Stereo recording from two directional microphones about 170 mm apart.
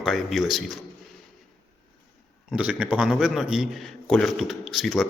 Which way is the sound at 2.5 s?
5° right (ahead or behind).